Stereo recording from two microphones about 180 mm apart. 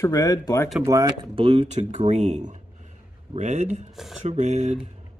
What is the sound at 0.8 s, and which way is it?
Speech, 20° right (ahead or behind).